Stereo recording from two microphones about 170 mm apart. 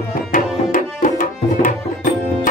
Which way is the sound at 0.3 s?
50° left (ahead or behind).